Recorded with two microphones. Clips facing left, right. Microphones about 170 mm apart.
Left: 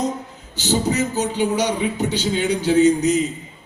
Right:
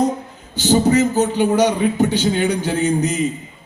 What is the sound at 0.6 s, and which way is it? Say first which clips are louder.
A man's voice: right 6 dB; 55° right (ahead or behind).